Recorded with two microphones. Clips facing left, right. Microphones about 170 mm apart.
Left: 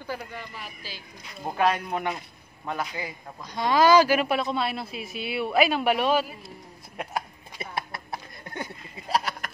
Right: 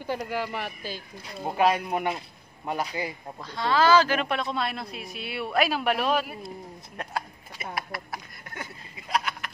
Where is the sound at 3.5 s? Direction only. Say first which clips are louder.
Left 2 dB; 15° left (ahead or behind).